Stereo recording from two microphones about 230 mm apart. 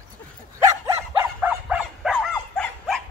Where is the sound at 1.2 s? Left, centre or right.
Centre.